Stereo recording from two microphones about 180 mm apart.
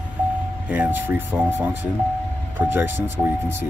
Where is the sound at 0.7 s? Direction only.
10° right (ahead or behind).